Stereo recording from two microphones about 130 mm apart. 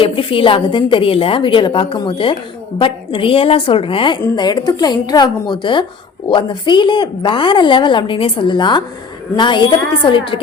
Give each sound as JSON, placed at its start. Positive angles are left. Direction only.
{"t": 0.0, "sound": "a woman's voice", "side_deg": 45}